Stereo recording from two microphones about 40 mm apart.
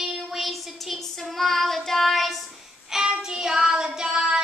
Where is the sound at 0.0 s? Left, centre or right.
Centre.